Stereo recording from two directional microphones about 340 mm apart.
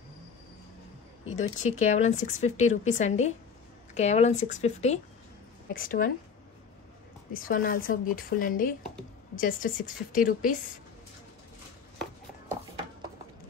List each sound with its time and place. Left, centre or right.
1.3 s speech: centre
7.3 s speech: left